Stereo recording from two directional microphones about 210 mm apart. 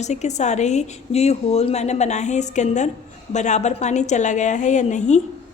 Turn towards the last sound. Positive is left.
turn(degrees=35)  # may be behind; listen again after turning